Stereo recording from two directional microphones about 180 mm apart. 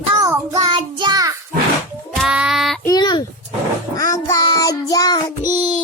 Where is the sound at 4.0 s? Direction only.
20° left (ahead or behind).